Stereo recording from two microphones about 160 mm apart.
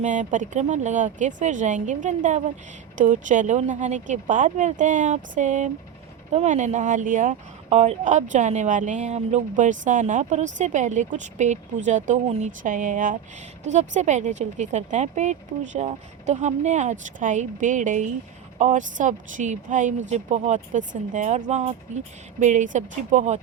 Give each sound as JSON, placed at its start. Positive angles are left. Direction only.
{"t": 0.0, "sound": "speech", "side_deg": -50}